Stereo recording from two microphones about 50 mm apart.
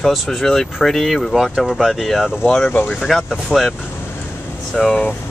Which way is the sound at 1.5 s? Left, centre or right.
Centre.